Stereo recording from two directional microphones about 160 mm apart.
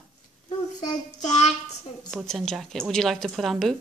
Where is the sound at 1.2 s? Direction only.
45° left (ahead or behind).